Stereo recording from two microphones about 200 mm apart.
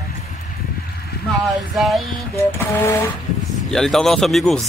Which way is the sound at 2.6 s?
10° left (ahead or behind).